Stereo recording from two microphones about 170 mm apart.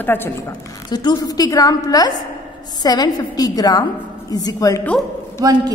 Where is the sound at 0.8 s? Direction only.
25° left (ahead or behind).